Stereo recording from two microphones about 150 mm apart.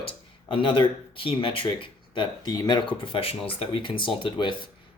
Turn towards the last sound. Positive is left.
turn(degrees=35)  # may be behind; listen again after turning